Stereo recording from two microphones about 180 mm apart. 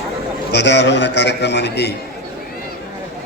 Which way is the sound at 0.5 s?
75° left (ahead or behind).